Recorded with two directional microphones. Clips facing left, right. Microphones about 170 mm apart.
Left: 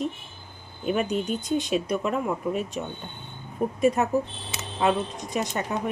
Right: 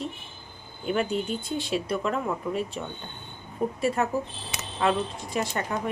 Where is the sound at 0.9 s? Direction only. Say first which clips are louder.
Left 1 dB; 20° left (ahead or behind).